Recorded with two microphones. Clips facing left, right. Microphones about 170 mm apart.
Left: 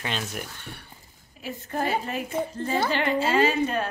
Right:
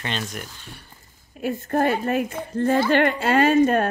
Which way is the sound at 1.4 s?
55° right (ahead or behind).